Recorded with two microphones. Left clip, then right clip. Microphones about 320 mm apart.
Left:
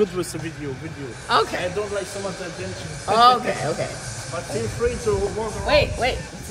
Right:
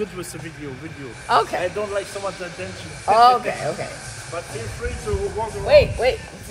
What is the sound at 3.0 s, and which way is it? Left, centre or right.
Speech, centre.